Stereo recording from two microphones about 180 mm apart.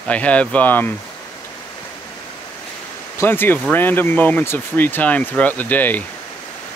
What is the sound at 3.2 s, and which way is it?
Speech, 10° left (ahead or behind).